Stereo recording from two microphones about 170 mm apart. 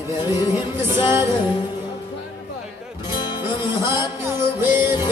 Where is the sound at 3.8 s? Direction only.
15° right (ahead or behind).